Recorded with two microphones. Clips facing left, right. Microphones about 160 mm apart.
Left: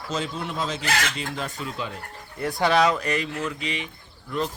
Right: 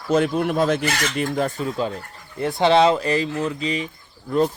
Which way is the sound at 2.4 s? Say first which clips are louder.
Right 5 dB; 25° right (ahead or behind).